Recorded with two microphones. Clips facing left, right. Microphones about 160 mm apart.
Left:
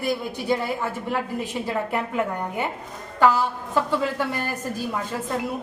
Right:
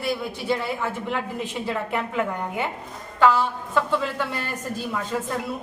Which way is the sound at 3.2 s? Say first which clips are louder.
Even; 10° left (ahead or behind).